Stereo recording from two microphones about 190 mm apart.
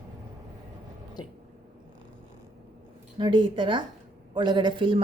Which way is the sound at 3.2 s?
25° right (ahead or behind).